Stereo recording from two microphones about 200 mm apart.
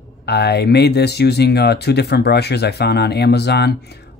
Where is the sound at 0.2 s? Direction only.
55° left (ahead or behind).